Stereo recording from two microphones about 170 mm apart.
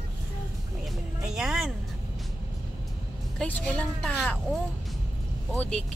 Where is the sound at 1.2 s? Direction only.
5° right (ahead or behind).